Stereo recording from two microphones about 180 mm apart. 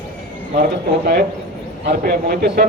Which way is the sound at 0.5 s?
65° right (ahead or behind).